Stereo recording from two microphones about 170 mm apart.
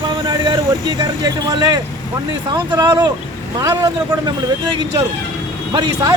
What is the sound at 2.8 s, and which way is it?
Speech, 25° right (ahead or behind).